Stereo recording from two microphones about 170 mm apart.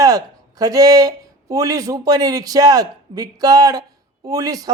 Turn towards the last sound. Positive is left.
turn(degrees=-20)  # may be behind; listen again after turning